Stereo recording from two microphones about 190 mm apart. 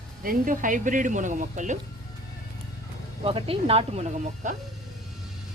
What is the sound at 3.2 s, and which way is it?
Speech, 30° right (ahead or behind).